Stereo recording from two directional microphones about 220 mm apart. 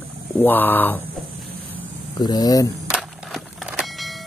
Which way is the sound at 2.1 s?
15° left (ahead or behind).